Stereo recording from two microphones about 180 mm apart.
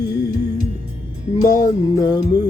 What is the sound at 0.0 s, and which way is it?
Music, 20° left (ahead or behind).